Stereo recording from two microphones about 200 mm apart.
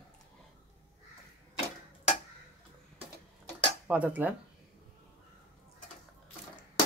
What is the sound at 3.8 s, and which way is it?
Speech, 5° right (ahead or behind).